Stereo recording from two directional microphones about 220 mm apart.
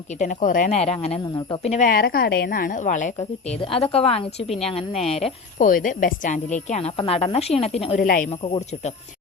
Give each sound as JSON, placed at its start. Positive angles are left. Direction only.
{"t": 0.2, "sound": "a woman's voice", "side_deg": 35}
{"t": 1.2, "sound": "speech", "side_deg": 15}
{"t": 1.6, "sound": "a woman's voice", "side_deg": 35}